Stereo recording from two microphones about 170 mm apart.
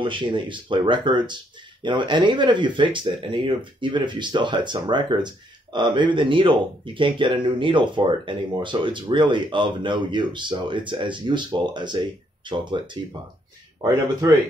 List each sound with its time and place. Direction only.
0.0 s speech: 30° right (ahead or behind)